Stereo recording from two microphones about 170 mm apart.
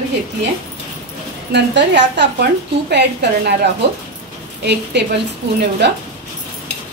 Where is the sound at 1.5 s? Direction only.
90° right.